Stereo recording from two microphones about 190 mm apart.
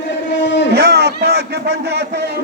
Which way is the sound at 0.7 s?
60° right (ahead or behind).